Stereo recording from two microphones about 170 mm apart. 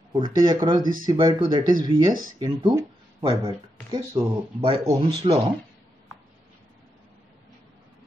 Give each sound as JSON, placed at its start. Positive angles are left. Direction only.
{"t": 0.1, "sound": "speech", "side_deg": -25}